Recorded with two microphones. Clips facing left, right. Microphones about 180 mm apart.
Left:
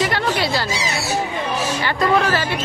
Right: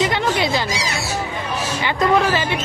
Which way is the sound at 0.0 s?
20° right (ahead or behind).